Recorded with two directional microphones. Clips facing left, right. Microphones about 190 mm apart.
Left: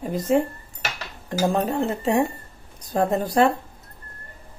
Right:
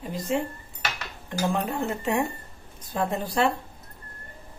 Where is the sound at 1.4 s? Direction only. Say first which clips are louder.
Left 5 dB; 35° left (ahead or behind).